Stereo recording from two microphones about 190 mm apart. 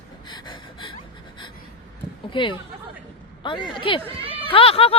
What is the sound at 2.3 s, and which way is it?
Speech, 25° left (ahead or behind).